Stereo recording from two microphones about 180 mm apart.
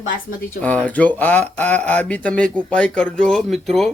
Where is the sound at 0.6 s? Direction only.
10° left (ahead or behind).